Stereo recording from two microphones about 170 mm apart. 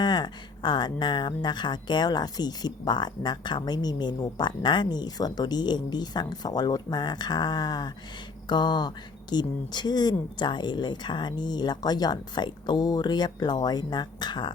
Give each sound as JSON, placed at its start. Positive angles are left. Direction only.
{"t": 0.0, "sound": "speech", "side_deg": 25}